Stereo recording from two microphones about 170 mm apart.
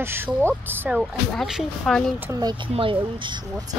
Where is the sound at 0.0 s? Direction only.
15° right (ahead or behind).